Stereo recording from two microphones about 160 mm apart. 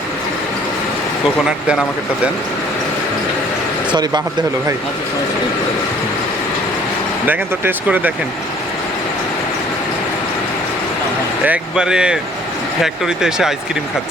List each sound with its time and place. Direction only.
1.5 s speech: 5° right (ahead or behind)
3.9 s speech: 25° right (ahead or behind)
7.3 s speech: 10° right (ahead or behind)
11.4 s speech: 5° right (ahead or behind)